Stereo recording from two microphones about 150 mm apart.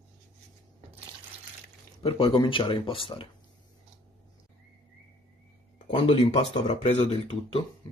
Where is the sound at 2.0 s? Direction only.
40° left (ahead or behind).